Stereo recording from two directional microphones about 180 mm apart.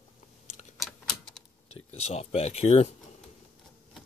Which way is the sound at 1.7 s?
35° left (ahead or behind).